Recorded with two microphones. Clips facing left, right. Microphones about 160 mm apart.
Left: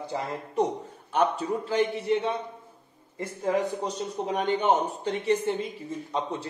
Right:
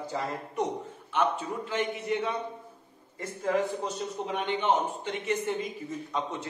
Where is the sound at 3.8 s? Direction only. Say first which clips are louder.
Left 3 dB; 40° left (ahead or behind).